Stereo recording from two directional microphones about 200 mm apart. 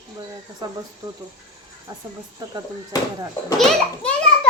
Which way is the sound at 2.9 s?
15° left (ahead or behind).